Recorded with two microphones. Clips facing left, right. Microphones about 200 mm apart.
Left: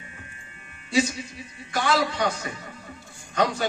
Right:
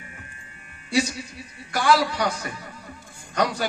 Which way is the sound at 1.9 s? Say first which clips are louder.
Right 3 dB; 25° left (ahead or behind).